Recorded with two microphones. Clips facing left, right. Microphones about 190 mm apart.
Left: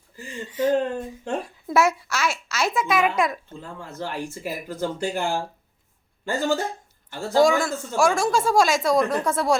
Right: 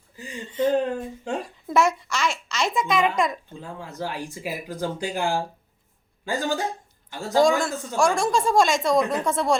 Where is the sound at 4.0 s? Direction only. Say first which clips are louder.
Left 1 dB; 10° right (ahead or behind).